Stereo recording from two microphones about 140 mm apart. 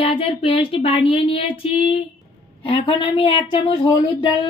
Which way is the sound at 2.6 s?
40° left (ahead or behind).